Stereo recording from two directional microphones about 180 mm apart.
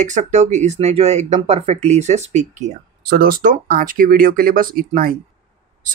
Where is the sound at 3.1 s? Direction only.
55° right (ahead or behind).